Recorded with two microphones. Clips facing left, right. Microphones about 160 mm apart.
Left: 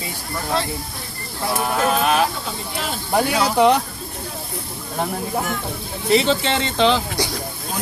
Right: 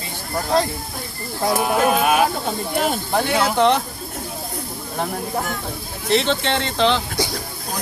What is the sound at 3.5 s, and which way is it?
Speech, 10° left (ahead or behind).